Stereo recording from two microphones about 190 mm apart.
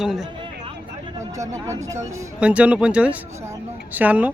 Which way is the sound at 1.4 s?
15° right (ahead or behind).